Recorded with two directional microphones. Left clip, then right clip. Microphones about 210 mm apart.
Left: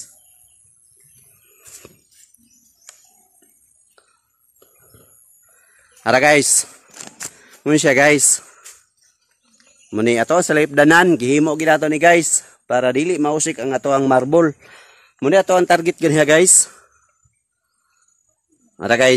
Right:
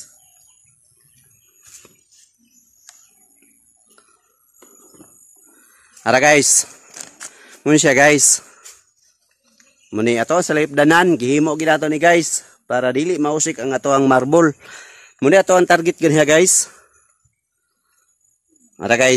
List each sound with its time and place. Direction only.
6.0 s speech: 10° right (ahead or behind)
9.8 s speech: centre (ahead or behind)
18.8 s speech: 10° right (ahead or behind)